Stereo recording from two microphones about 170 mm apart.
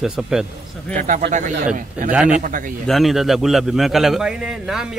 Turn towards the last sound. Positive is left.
turn(degrees=-5)  # may be behind; listen again after turning